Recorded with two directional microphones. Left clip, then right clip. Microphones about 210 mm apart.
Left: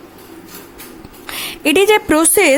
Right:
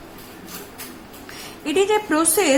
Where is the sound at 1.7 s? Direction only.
45° left (ahead or behind).